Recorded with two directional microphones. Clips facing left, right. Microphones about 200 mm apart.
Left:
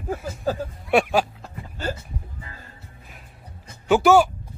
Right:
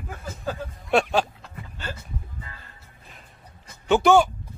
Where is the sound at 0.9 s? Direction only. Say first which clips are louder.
Left 2 dB; 10° left (ahead or behind).